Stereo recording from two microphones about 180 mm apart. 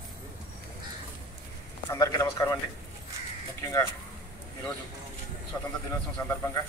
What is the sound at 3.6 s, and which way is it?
Speech, 15° left (ahead or behind).